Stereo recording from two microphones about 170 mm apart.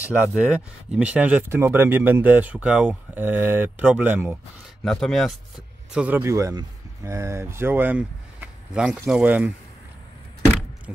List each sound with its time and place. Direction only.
0.3 s speech: 5° right (ahead or behind)
4.8 s speech: centre (ahead or behind)
5.9 s speech: 10° right (ahead or behind)